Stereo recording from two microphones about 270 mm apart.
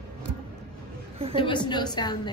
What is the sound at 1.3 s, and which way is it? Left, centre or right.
Speech, centre.